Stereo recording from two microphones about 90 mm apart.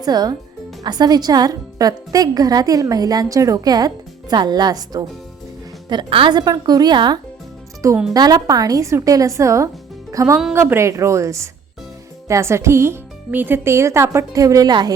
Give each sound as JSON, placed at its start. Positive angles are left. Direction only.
{"t": 0.0, "sound": "a woman's voice", "side_deg": -45}
{"t": 5.9, "sound": "a woman's voice", "side_deg": -70}
{"t": 6.3, "sound": "a woman's voice", "side_deg": -50}
{"t": 14.7, "sound": "a woman's voice", "side_deg": -55}